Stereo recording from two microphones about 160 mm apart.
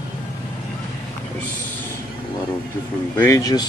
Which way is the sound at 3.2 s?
20° left (ahead or behind).